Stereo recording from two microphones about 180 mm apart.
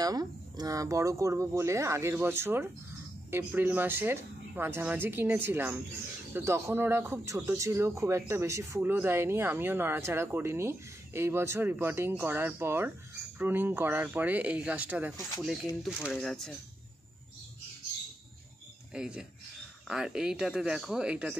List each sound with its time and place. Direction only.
0.0 s speech: 20° right (ahead or behind); by 16.5 s 5° left (ahead or behind)
18.9 s speech: 5° right (ahead or behind)